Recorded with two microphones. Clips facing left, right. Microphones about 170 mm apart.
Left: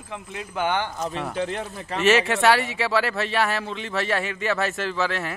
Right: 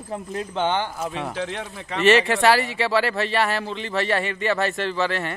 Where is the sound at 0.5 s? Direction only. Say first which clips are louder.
Right 1 dB; 20° right (ahead or behind).